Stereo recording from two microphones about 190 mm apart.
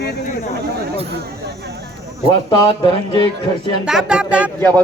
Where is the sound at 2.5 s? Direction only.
25° left (ahead or behind).